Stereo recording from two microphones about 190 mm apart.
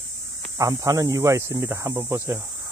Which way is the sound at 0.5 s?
15° right (ahead or behind).